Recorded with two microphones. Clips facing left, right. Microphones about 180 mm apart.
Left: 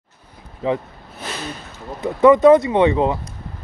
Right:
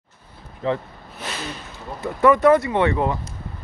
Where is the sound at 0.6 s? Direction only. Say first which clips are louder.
Left 2 dB; 15° left (ahead or behind).